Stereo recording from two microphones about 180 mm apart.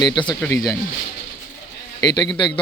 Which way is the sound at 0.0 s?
25° left (ahead or behind).